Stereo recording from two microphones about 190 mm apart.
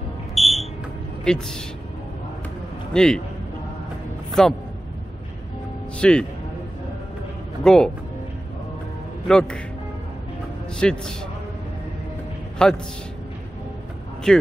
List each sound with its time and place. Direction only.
0.3 s a sound: centre (ahead or behind)
1.2 s a man's voice: 5° left (ahead or behind)
2.9 s a man's voice: 5° left (ahead or behind)
5.9 s a man's voice: 5° left (ahead or behind)
7.6 s a man's voice: 5° left (ahead or behind)
9.3 s a man's voice: 5° left (ahead or behind)
10.8 s a man's voice: 5° left (ahead or behind)
12.6 s a man's voice: 5° left (ahead or behind)
14.3 s a man's voice: 5° left (ahead or behind)